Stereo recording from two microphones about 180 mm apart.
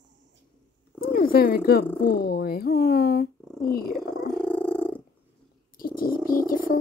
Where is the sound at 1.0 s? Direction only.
55° left (ahead or behind).